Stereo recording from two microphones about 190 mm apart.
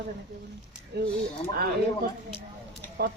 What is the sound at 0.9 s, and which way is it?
Speech, 65° right (ahead or behind).